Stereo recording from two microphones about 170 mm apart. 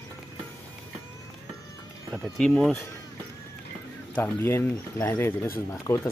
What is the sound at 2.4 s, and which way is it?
Speech, 5° left (ahead or behind).